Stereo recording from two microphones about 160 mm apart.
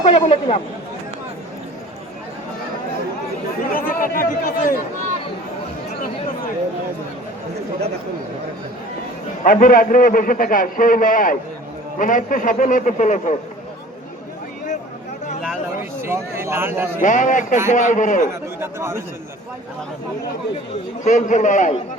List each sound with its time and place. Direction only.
0.0 s speech: 40° left (ahead or behind)
3.7 s speech: 65° left (ahead or behind)
9.4 s a man's voice: 65° left (ahead or behind)
15.8 s speech: 15° right (ahead or behind)
17.0 s a man's voice: 55° left (ahead or behind)
18.6 s speech: 15° right (ahead or behind)
21.0 s a man's voice: 50° left (ahead or behind)